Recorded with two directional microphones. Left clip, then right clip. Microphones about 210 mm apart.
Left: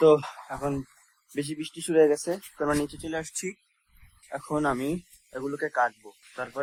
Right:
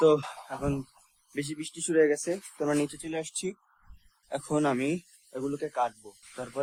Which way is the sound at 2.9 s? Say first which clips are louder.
Left 2 dB; 5° left (ahead or behind).